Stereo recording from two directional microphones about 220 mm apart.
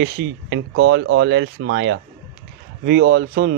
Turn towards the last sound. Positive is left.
turn(degrees=-45)  # may be behind; listen again after turning